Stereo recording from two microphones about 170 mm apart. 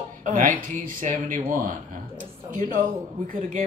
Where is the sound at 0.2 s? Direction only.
45° right (ahead or behind).